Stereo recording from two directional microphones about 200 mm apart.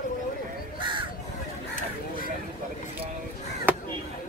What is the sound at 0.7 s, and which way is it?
Crow, 25° right (ahead or behind).